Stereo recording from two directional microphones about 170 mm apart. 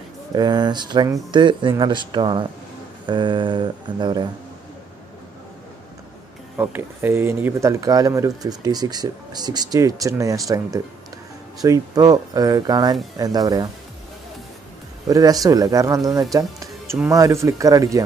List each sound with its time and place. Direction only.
0.3 s speech: 25° right (ahead or behind)
6.5 s speech: 10° right (ahead or behind)
15.0 s speech: 20° right (ahead or behind)